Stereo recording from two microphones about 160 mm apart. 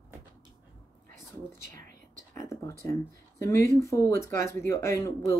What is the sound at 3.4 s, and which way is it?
Speech, 15° left (ahead or behind).